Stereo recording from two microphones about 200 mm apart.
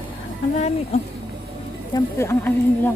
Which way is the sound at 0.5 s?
35° left (ahead or behind).